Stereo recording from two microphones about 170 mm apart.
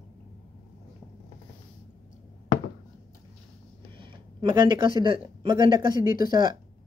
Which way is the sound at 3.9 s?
30° right (ahead or behind).